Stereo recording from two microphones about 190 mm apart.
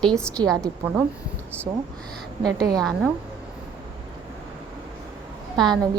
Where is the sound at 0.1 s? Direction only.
5° left (ahead or behind).